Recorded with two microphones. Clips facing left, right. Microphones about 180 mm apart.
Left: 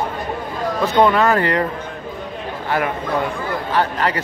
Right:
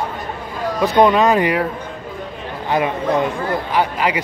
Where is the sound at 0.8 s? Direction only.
15° right (ahead or behind).